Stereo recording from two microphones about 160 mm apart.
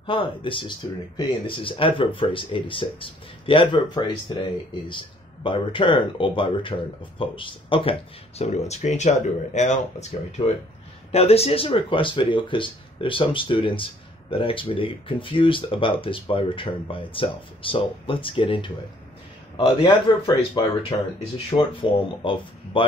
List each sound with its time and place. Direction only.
0.0 s speech: 35° left (ahead or behind)